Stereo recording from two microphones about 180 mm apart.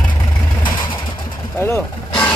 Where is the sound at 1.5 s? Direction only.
10° left (ahead or behind).